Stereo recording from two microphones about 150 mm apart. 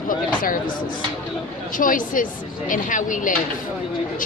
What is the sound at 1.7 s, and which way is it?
A woman's voice, 65° left (ahead or behind).